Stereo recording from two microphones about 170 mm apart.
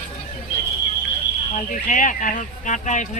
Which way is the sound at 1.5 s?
50° left (ahead or behind).